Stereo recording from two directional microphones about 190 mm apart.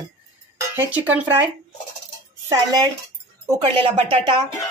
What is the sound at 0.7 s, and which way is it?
Speech, 10° right (ahead or behind).